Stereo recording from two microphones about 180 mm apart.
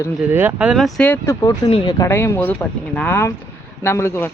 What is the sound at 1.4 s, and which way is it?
Speech, 25° left (ahead or behind).